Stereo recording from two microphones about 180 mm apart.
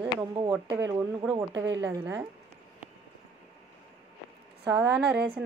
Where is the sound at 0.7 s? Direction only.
20° right (ahead or behind).